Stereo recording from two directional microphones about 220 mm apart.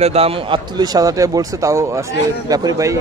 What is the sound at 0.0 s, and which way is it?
A man's voice, 25° right (ahead or behind).